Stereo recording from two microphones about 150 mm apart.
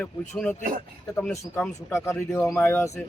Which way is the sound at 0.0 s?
10° left (ahead or behind).